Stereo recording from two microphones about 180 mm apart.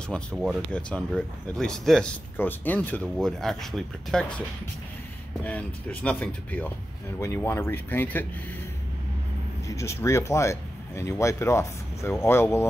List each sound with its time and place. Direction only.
0.1 s speech: centre (ahead or behind)
5.4 s speech: 10° left (ahead or behind)
9.7 s speech: 15° left (ahead or behind)